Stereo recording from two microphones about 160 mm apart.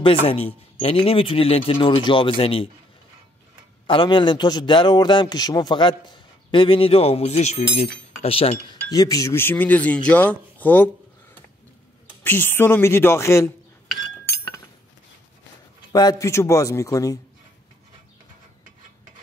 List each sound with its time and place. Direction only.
0.0 s a man's voice: 35° left (ahead or behind)
3.8 s a man's voice: 30° left (ahead or behind)
8.9 s speech: 20° left (ahead or behind)
12.2 s speech: 10° left (ahead or behind)
15.9 s a man's voice: 25° left (ahead or behind)